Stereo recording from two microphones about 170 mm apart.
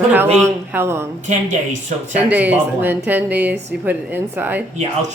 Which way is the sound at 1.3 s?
45° right (ahead or behind).